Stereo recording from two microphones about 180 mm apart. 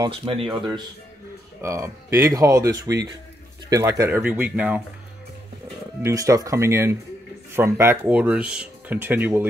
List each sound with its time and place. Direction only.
0.0 s speech: 30° right (ahead or behind)
1.6 s speech: 15° right (ahead or behind)
6.0 s speech: 20° right (ahead or behind)